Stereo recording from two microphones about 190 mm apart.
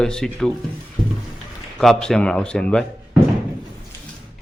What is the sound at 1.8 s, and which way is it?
Speech, 5° left (ahead or behind).